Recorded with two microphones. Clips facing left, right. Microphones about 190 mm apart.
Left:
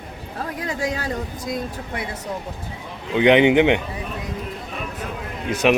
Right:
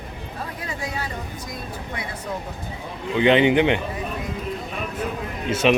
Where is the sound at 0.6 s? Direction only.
90° left.